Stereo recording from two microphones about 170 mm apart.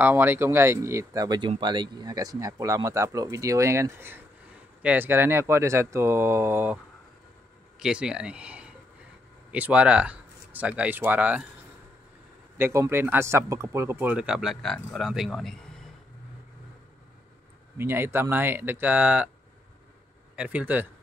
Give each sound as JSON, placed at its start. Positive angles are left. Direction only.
{"t": 0.0, "sound": "speech", "side_deg": -15}
{"t": 7.8, "sound": "speech", "side_deg": -5}
{"t": 12.5, "sound": "speech", "side_deg": -15}
{"t": 17.7, "sound": "speech", "side_deg": -15}
{"t": 20.3, "sound": "speech", "side_deg": -10}